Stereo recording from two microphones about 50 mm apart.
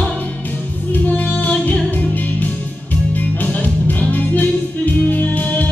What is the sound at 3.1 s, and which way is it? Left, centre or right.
Music, left.